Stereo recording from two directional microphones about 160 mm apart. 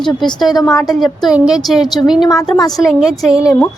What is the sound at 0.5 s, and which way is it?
Speech, 20° left (ahead or behind).